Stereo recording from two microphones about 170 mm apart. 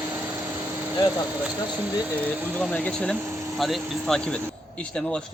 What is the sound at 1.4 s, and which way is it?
Speech, 10° right (ahead or behind).